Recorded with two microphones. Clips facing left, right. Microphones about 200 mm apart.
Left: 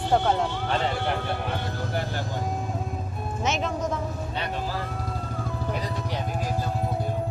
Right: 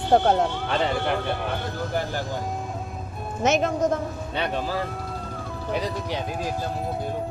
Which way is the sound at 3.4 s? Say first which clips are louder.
Right 6 dB; 45° right (ahead or behind).